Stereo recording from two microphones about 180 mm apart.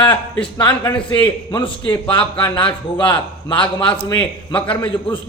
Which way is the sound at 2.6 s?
5° left (ahead or behind).